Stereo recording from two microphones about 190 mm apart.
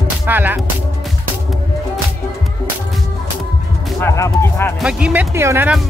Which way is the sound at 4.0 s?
15° left (ahead or behind).